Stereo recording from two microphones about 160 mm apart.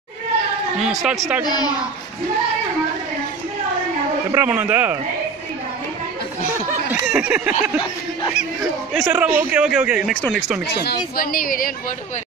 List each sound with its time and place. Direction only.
0.7 s a woman's voice: 5° right (ahead or behind)
1.4 s a woman's voice: 25° left (ahead or behind)
4.3 s a man's voice: 10° right (ahead or behind)
6.9 s a man's voice: 10° right (ahead or behind)
8.9 s a man's voice: 5° right (ahead or behind)
11.1 s speech: 65° left (ahead or behind)